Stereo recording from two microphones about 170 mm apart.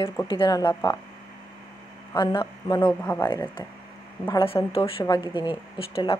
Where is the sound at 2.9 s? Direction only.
10° left (ahead or behind).